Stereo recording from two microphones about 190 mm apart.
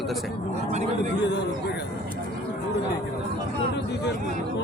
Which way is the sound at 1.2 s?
65° left (ahead or behind).